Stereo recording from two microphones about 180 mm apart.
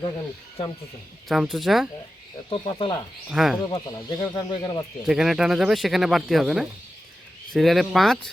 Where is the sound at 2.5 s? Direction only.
30° left (ahead or behind).